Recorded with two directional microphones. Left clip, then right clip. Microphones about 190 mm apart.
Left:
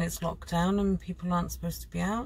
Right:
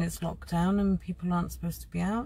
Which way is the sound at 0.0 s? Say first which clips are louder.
Left 2 dB; 5° left (ahead or behind).